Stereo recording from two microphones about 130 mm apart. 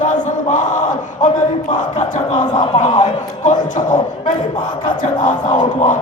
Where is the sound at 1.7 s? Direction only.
60° left (ahead or behind).